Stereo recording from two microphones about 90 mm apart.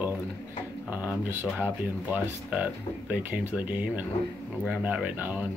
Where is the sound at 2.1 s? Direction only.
15° right (ahead or behind).